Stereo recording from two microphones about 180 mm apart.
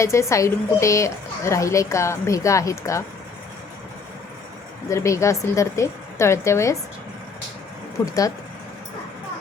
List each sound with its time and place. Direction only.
0.0 s a woman's voice: 15° left (ahead or behind)
4.9 s a woman's voice: 15° left (ahead or behind)
8.0 s speech: 20° left (ahead or behind)